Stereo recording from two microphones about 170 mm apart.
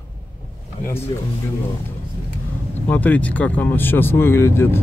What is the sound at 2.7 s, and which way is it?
Speech, 10° left (ahead or behind).